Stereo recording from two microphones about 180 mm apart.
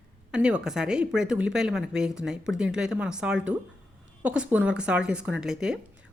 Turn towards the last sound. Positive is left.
turn(degrees=-5)  # may be behind; listen again after turning